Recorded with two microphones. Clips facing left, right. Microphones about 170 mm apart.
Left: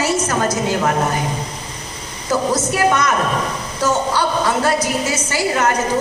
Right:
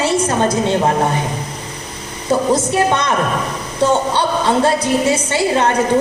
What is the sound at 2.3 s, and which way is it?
A woman's voice, 30° right (ahead or behind).